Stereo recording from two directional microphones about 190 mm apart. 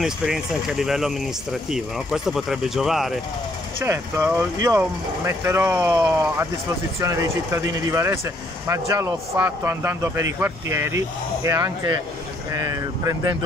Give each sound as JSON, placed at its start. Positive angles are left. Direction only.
{"t": 0.0, "sound": "speech", "side_deg": -5}
{"t": 3.8, "sound": "speech", "side_deg": -10}